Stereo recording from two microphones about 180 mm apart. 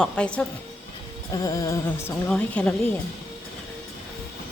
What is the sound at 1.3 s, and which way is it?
Music, 20° left (ahead or behind).